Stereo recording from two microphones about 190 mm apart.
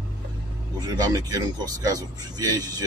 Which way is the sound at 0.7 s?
20° right (ahead or behind).